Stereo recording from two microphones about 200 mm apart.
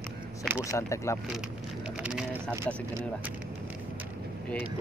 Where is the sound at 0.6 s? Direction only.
15° left (ahead or behind).